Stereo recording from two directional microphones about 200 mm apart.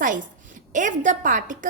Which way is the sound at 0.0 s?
40° right (ahead or behind).